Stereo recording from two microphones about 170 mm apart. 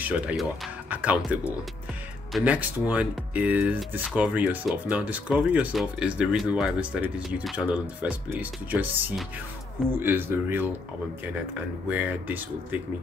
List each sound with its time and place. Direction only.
0.0 s speech: 10° right (ahead or behind)
11.9 s speech: 10° right (ahead or behind)